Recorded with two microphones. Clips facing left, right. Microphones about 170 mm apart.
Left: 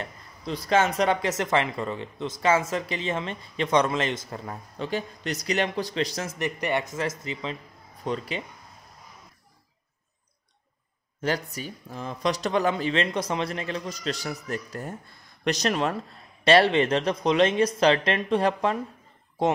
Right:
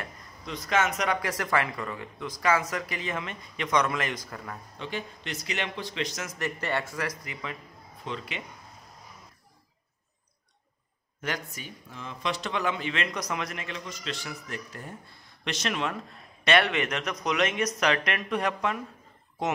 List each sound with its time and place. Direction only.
0.0 s speech: 30° left (ahead or behind)
4.7 s speech: 40° left (ahead or behind)
6.3 s speech: 20° left (ahead or behind)
8.0 s speech: 40° left (ahead or behind)
11.1 s speech: 30° left (ahead or behind)